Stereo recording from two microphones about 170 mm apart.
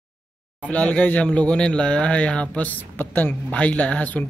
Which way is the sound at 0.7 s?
10° left (ahead or behind).